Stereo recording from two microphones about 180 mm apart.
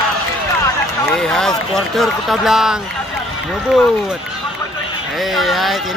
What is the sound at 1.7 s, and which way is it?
A man's voice, centre (ahead or behind).